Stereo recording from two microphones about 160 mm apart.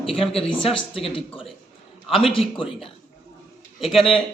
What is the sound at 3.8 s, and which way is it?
Speech, centre (ahead or behind).